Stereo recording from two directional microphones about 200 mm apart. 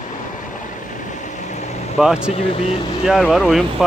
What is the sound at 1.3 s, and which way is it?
Vehicle, 35° left (ahead or behind).